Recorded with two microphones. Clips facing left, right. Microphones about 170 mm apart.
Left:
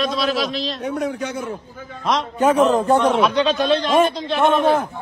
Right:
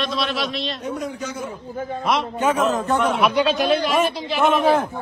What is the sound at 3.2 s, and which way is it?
A man's voice, 10° right (ahead or behind).